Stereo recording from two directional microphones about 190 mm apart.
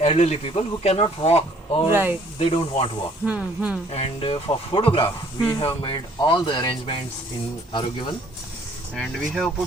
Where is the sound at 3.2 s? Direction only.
5° right (ahead or behind).